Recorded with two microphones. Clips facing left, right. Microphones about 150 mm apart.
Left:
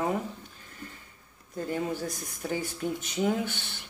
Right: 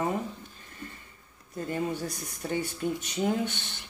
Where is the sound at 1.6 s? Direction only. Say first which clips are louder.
Even; centre (ahead or behind).